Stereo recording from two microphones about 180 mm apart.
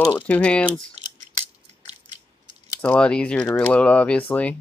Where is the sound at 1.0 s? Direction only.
35° right (ahead or behind).